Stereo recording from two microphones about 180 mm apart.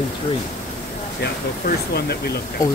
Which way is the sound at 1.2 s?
65° left (ahead or behind).